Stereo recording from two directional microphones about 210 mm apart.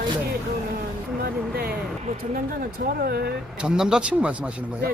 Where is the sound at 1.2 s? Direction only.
45° right (ahead or behind).